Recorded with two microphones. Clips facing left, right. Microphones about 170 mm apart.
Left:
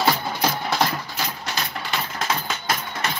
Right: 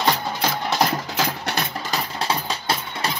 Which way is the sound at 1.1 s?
65° right (ahead or behind).